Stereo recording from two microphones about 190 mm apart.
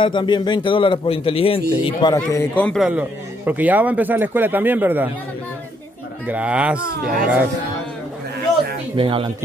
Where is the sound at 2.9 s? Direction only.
10° right (ahead or behind).